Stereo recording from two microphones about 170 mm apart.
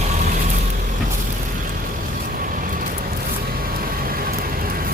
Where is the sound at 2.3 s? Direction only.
55° right (ahead or behind).